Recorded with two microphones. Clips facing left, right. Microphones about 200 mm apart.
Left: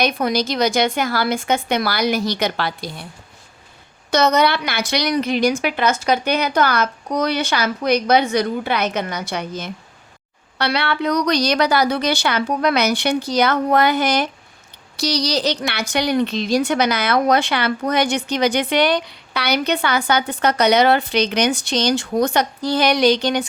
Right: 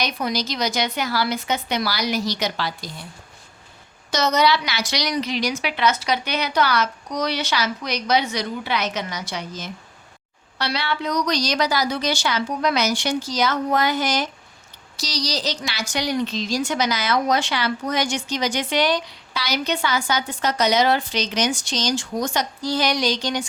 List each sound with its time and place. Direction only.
0.0 s speech: 55° left (ahead or behind)
4.1 s speech: 60° left (ahead or behind)